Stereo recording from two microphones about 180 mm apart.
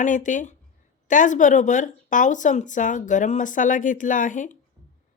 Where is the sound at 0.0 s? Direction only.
45° left (ahead or behind).